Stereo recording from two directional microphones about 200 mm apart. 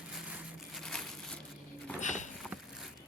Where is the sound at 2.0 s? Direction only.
40° left (ahead or behind).